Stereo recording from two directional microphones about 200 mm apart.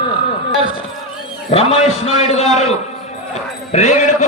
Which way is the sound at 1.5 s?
30° left (ahead or behind).